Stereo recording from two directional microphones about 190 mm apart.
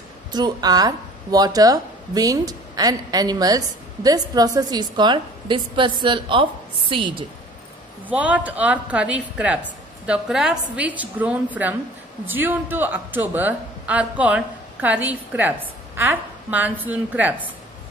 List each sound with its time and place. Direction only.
0.3 s speech: 20° right (ahead or behind)
8.1 s a man's voice: 5° right (ahead or behind)